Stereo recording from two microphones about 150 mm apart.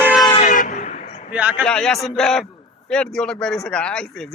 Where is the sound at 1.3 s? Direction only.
10° right (ahead or behind).